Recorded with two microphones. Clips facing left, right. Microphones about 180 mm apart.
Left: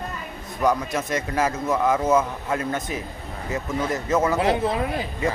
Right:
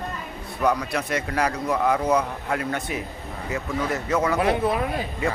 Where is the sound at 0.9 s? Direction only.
20° left (ahead or behind).